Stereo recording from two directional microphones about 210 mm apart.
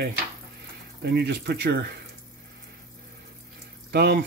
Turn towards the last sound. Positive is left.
turn(degrees=-50)  # may be behind; listen again after turning